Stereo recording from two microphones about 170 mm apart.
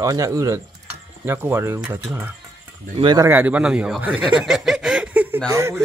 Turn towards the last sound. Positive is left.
turn(degrees=-15)  # may be behind; listen again after turning